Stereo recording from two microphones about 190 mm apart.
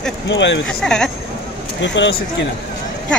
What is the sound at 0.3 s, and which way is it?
Speech, 75° left (ahead or behind).